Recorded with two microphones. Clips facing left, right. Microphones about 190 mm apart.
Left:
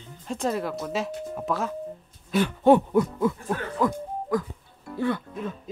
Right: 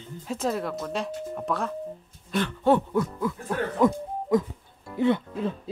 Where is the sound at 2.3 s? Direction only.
15° left (ahead or behind).